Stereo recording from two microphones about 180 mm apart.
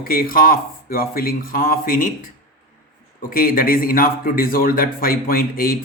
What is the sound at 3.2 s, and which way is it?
A man's voice, 55° left (ahead or behind).